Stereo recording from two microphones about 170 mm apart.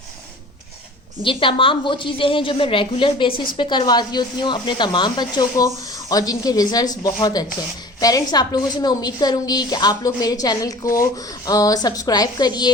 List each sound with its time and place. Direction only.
1.2 s a woman's voice: 30° left (ahead or behind)